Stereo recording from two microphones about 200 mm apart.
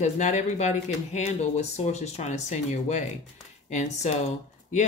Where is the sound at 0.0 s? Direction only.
35° left (ahead or behind).